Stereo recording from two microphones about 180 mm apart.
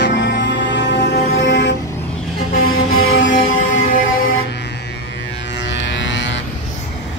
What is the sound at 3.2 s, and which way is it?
Music, 50° left (ahead or behind).